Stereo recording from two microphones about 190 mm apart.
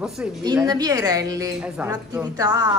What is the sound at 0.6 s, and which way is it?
A woman's voice, 20° right (ahead or behind).